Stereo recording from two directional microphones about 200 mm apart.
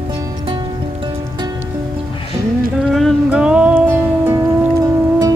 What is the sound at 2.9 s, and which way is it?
Music, centre (ahead or behind).